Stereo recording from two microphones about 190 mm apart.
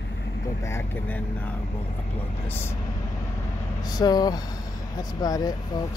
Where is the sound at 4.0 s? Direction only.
20° left (ahead or behind).